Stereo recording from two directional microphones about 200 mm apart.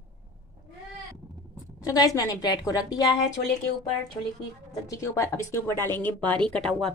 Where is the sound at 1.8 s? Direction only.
15° left (ahead or behind).